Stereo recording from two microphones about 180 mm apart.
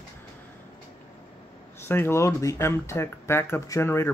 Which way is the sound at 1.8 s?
15° left (ahead or behind).